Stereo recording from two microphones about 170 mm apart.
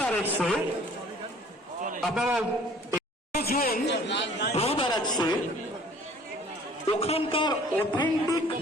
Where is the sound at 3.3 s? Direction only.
65° left (ahead or behind); by 4.5 s 90° left.